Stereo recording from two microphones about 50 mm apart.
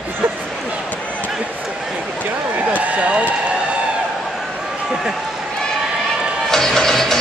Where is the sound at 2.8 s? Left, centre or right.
Right.